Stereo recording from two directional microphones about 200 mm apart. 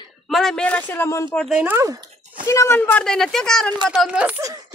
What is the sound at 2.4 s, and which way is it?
Speech, 15° left (ahead or behind).